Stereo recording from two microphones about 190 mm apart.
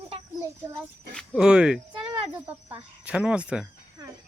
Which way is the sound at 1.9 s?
25° right (ahead or behind).